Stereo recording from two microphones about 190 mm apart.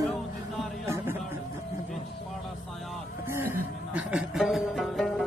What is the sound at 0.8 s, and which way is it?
Music, 15° right (ahead or behind).